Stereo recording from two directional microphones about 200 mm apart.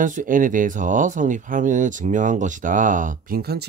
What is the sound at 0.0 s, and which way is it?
Speech, 40° right (ahead or behind).